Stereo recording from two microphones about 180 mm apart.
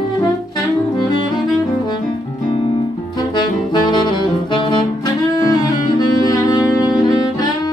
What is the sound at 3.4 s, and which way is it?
Saxophone, 25° left (ahead or behind).